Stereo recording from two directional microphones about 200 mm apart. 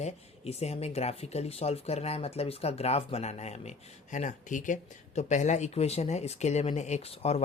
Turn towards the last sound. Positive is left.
turn(degrees=30)  # may be behind; listen again after turning